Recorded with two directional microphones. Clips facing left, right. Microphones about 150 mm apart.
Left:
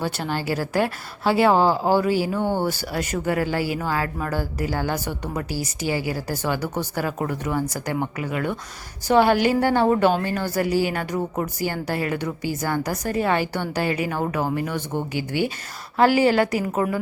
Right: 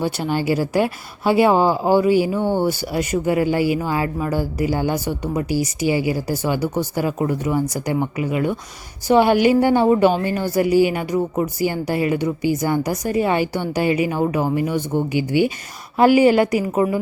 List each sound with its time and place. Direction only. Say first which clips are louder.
0.0 s speech: right 5 dB; 15° right (ahead or behind)